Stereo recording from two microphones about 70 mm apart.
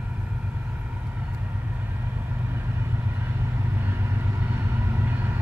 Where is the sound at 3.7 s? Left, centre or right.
Right.